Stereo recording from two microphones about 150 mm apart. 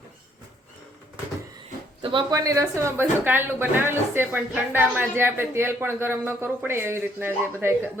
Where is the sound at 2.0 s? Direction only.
35° right (ahead or behind).